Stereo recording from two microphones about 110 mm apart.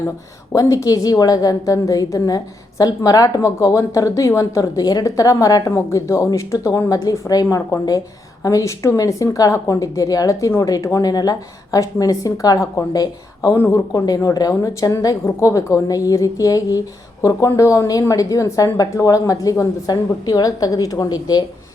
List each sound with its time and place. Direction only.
0.5 s a woman's voice: 30° left (ahead or behind)